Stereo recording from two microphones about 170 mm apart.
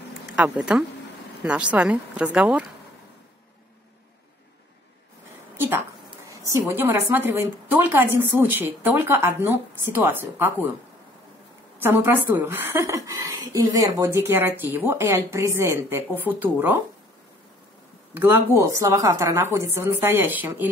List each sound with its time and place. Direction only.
0.3 s a woman's voice: 5° right (ahead or behind)
6.0 s a sound: 20° right (ahead or behind)
6.5 s a woman's voice: 15° right (ahead or behind)
11.8 s a woman's voice: 15° right (ahead or behind)
18.1 s a woman's voice: 10° right (ahead or behind)